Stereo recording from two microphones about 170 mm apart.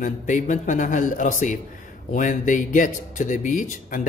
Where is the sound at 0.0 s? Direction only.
45° left (ahead or behind).